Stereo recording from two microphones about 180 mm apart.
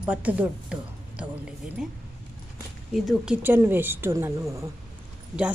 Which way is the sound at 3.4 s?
10° right (ahead or behind).